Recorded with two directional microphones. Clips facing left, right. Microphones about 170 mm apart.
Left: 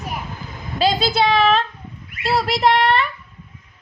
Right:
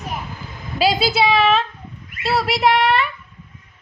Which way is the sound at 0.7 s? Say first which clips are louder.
Even; 10° right (ahead or behind).